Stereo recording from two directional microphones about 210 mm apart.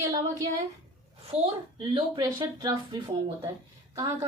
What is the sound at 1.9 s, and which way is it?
A woman's voice, 20° right (ahead or behind).